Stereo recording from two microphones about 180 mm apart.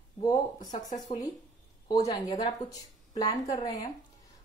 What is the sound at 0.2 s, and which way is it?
Speech, 20° left (ahead or behind).